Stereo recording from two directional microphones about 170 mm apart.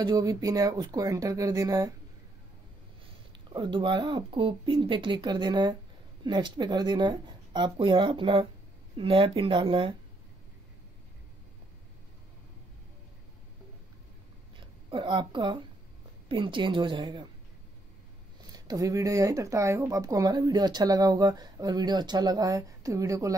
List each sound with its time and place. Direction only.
0.0 s speech: 20° right (ahead or behind)
3.5 s speech: 25° right (ahead or behind)
14.9 s speech: 25° right (ahead or behind)
18.5 s speech: 20° right (ahead or behind)